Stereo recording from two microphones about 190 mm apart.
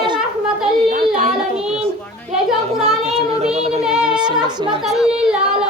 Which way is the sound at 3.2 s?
30° right (ahead or behind).